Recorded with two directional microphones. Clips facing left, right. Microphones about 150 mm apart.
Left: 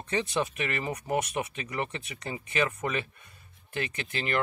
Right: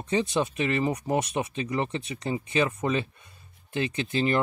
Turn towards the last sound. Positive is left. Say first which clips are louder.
# right 7 dB
turn(degrees=-30)  # may be behind; listen again after turning